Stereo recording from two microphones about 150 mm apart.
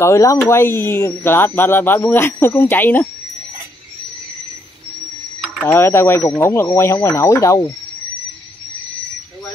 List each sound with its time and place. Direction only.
0.0 s speech: 20° left (ahead or behind)
5.7 s speech: 15° left (ahead or behind)